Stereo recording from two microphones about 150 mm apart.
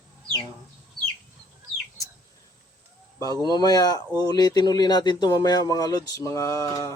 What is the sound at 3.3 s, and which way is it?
Speech, 25° left (ahead or behind).